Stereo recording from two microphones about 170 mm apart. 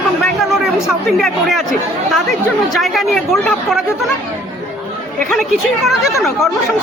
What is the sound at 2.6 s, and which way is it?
Speech, centre (ahead or behind).